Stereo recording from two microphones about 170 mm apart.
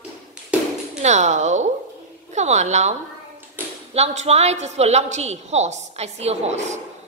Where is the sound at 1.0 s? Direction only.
45° right (ahead or behind).